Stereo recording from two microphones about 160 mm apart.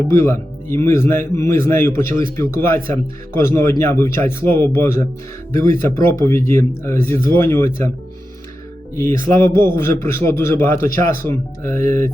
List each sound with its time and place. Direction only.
0.1 s a man's voice: 20° left (ahead or behind)
6.2 s a man's voice: 15° left (ahead or behind)
9.0 s a man's voice: 15° left (ahead or behind)